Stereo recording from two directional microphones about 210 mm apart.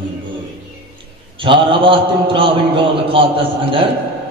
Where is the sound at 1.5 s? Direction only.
25° right (ahead or behind).